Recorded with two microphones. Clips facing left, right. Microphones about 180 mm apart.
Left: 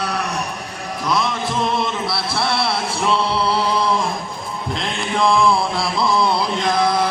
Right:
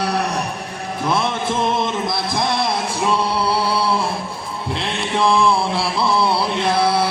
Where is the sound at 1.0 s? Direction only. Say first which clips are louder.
Right 1 dB; 25° right (ahead or behind); by 3.9 s 10° right (ahead or behind).